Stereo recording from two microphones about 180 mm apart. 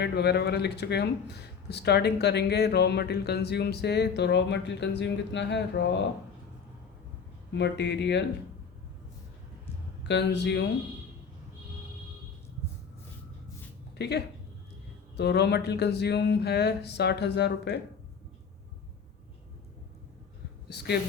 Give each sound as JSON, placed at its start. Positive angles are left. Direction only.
{"t": 0.0, "sound": "speech", "side_deg": 65}
{"t": 7.5, "sound": "speech", "side_deg": 70}
{"t": 10.1, "sound": "speech", "side_deg": 70}
{"t": 14.0, "sound": "speech", "side_deg": 65}
{"t": 20.7, "sound": "speech", "side_deg": 65}